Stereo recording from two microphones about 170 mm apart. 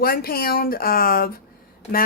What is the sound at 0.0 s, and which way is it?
Speech, 60° left (ahead or behind).